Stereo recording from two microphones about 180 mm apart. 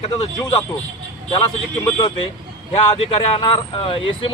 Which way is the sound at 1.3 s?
25° left (ahead or behind).